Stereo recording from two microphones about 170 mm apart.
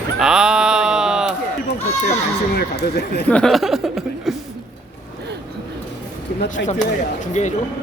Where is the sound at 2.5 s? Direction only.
70° left (ahead or behind).